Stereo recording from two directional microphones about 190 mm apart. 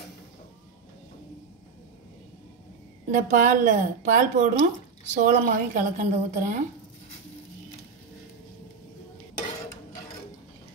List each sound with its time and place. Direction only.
3.1 s speech: 40° right (ahead or behind)